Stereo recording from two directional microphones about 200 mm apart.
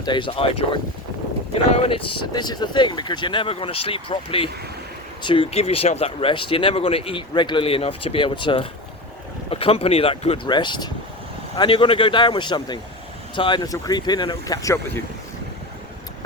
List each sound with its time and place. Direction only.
0.0 s speech: 25° left (ahead or behind)
1.7 s speech: 30° left (ahead or behind)